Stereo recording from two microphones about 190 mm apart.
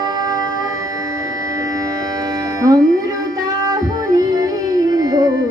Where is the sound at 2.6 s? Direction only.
20° right (ahead or behind).